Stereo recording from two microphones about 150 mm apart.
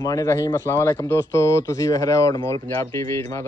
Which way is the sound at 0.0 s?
20° left (ahead or behind).